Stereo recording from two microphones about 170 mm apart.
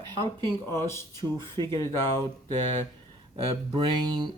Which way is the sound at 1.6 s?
20° left (ahead or behind).